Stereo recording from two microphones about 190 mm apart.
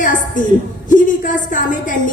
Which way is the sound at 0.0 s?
45° left (ahead or behind).